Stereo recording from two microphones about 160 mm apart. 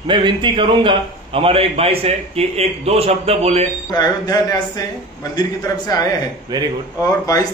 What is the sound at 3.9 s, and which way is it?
A man's voice, 25° left (ahead or behind).